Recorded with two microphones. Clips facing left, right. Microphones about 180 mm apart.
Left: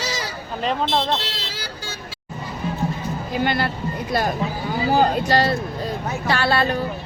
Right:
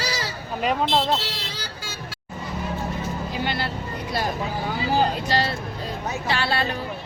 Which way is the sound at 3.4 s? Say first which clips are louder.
Left 6 dB; 50° left (ahead or behind).